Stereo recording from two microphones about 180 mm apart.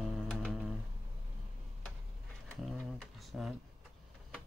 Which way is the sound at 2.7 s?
Centre (ahead or behind).